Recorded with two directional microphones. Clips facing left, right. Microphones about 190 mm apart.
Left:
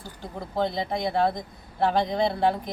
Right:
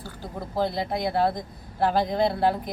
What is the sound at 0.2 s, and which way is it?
A woman's voice, centre (ahead or behind).